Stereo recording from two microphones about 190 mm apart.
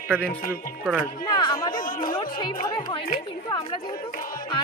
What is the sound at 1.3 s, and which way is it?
Music, 20° left (ahead or behind).